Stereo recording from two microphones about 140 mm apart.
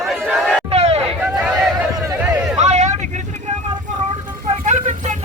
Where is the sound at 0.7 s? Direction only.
50° right (ahead or behind).